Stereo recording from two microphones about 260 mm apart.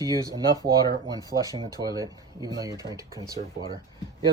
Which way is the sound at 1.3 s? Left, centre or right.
Right.